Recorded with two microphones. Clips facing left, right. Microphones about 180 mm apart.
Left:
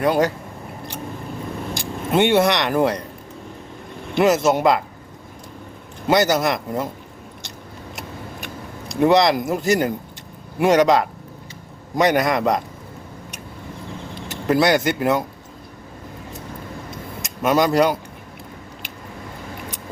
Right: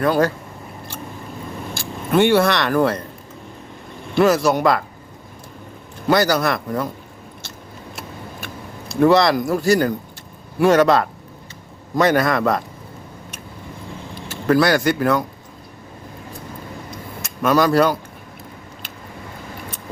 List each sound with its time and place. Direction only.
0.0 s a man's voice: 15° left (ahead or behind)
1.7 s speech: 20° left (ahead or behind)
4.1 s speech: 20° left (ahead or behind)
6.1 s speech: 20° left (ahead or behind)
8.9 s a man's voice: 15° left (ahead or behind)
14.2 s speech: 20° left (ahead or behind)
16.9 s a sound: 20° left (ahead or behind)